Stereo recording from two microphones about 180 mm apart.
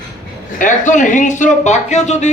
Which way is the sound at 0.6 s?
45° left (ahead or behind).